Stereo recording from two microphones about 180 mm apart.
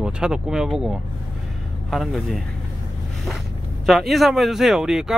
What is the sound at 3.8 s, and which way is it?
Speech, centre (ahead or behind).